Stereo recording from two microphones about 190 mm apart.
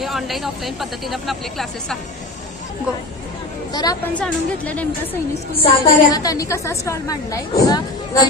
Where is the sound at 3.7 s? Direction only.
20° left (ahead or behind).